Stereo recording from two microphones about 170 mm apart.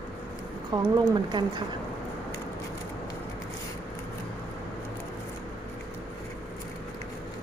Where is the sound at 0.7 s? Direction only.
25° right (ahead or behind).